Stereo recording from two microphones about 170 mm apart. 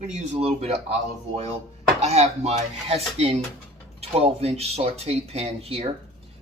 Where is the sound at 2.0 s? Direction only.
40° right (ahead or behind).